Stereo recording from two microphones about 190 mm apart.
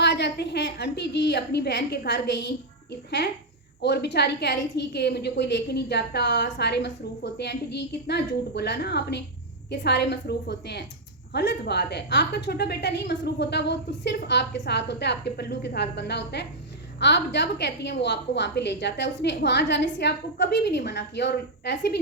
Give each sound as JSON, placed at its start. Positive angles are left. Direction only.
{"t": 0.0, "sound": "a woman's voice", "side_deg": 65}